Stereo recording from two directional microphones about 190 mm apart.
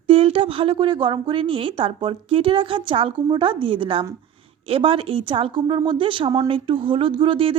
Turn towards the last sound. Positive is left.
turn(degrees=-25)  # may be behind; listen again after turning